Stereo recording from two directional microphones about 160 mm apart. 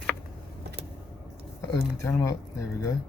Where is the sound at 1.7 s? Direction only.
15° left (ahead or behind).